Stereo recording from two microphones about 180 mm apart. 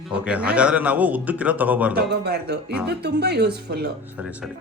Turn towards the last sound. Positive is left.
turn(degrees=-5)  # may be behind; listen again after turning